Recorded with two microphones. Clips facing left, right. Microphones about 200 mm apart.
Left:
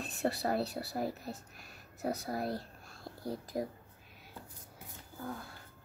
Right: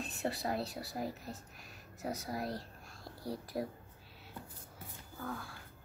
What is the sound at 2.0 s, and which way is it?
Speech, 55° left (ahead or behind).